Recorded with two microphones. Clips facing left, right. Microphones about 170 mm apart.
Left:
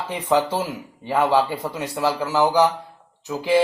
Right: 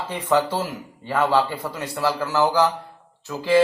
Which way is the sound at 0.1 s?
10° left (ahead or behind).